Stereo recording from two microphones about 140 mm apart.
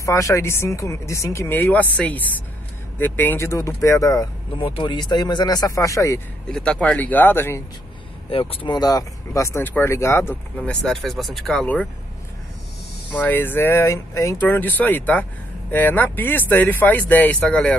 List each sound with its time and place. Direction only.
0.0 s speech: 20° left (ahead or behind)
4.6 s speech: 40° left (ahead or behind); by 6.2 s 20° left (ahead or behind)
6.5 s speech: 5° left (ahead or behind)
8.3 s speech: 40° left (ahead or behind); by 10.3 s 20° left (ahead or behind)
10.6 s speech: 5° left (ahead or behind)
13.1 s speech: 15° left (ahead or behind)